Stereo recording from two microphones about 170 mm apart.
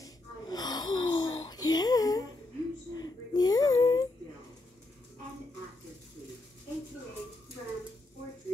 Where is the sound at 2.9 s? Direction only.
25° left (ahead or behind).